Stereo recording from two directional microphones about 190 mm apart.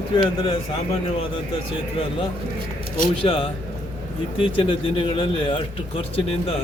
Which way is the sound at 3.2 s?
30° left (ahead or behind).